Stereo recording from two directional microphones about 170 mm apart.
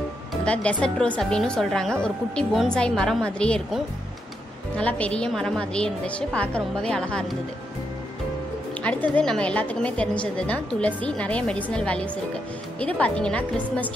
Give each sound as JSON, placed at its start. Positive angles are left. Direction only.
{"t": 0.3, "sound": "a woman's voice", "side_deg": 5}
{"t": 8.8, "sound": "a woman's voice", "side_deg": 10}